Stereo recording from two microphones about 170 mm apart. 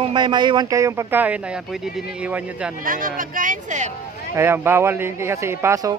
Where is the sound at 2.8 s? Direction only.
55° right (ahead or behind).